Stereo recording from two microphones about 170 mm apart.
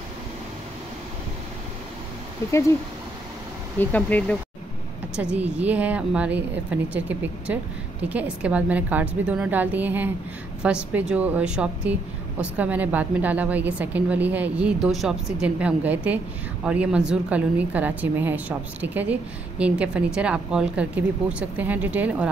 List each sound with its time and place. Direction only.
3.8 s speech: 10° left (ahead or behind)
5.1 s a woman's voice: 5° right (ahead or behind)